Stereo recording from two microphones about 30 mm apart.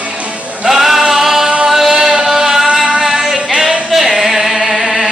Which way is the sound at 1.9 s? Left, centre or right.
Right.